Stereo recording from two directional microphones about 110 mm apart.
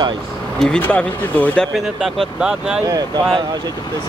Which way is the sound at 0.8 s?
15° left (ahead or behind).